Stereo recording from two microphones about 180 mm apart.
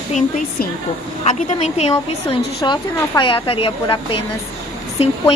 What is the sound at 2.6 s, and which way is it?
A woman's voice, 25° left (ahead or behind).